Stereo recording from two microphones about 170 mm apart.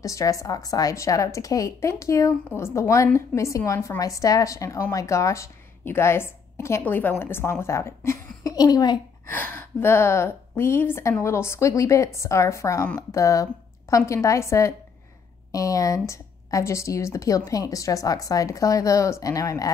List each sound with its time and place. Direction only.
0.0 s a woman's voice: 20° left (ahead or behind)
9.3 s a woman's voice: 10° left (ahead or behind)